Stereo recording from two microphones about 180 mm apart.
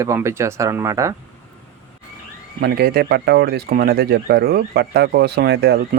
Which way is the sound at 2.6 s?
60° right (ahead or behind).